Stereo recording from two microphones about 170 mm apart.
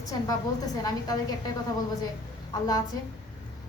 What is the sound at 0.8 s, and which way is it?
Speech, 20° left (ahead or behind).